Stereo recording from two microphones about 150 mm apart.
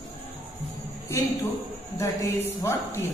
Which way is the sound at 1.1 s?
20° left (ahead or behind).